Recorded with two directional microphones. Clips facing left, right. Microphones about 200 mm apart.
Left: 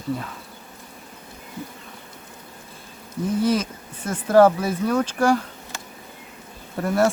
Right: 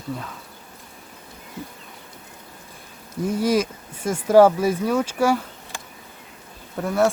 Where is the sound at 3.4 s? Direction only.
10° right (ahead or behind).